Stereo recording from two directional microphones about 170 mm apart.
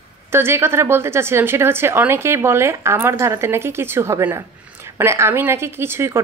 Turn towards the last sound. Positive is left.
turn(degrees=-15)  # may be behind; listen again after turning